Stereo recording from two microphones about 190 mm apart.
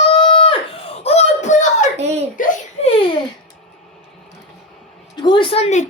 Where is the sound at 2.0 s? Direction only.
35° right (ahead or behind).